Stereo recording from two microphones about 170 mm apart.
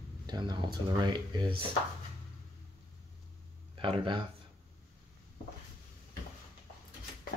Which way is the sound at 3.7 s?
30° right (ahead or behind).